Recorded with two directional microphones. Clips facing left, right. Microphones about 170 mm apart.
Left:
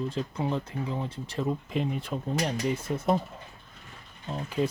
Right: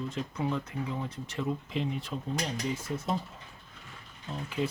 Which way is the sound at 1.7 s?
50° left (ahead or behind).